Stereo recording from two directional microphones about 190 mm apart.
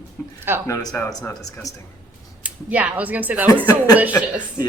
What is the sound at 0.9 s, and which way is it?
Speech, 15° left (ahead or behind).